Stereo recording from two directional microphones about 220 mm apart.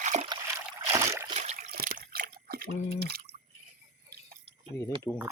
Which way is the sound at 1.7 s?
45° right (ahead or behind).